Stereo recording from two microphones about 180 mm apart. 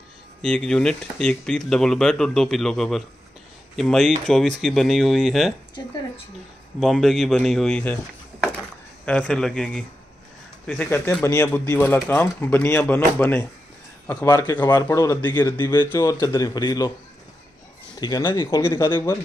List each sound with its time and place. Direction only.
0.4 s speech: 5° left (ahead or behind)
6.8 s speech: centre (ahead or behind)
9.0 s a man's voice: 5° left (ahead or behind); by 16.9 s 20° left (ahead or behind)
18.0 s speech: 25° left (ahead or behind)